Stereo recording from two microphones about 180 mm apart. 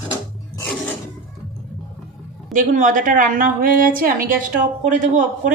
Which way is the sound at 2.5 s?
45° right (ahead or behind).